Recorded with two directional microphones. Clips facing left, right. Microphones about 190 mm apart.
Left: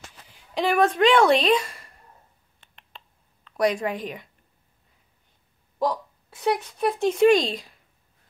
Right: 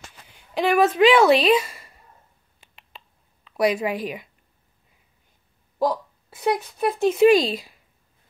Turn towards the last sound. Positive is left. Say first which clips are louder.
# right 2 dB
turn(degrees=-5)  # may be behind; listen again after turning